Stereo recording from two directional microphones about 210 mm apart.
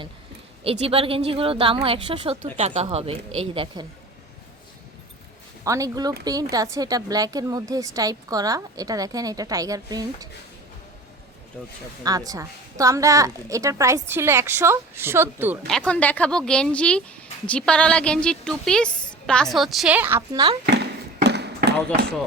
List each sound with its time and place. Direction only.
0.6 s a woman's voice: 25° right (ahead or behind)
5.6 s a woman's voice: 15° right (ahead or behind)
12.0 s a woman's voice: 15° right (ahead or behind)
15.6 s a woman's voice: 5° left (ahead or behind); by 20.6 s 20° right (ahead or behind)
21.2 s basketball bounce: 55° right (ahead or behind)